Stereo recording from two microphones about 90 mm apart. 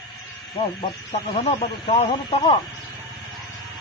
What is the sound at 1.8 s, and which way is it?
Speech, 90° left.